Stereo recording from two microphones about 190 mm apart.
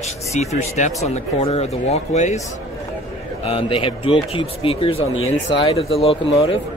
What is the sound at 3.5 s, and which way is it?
Speech, 30° left (ahead or behind).